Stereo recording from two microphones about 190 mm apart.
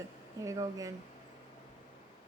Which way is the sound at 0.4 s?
20° right (ahead or behind).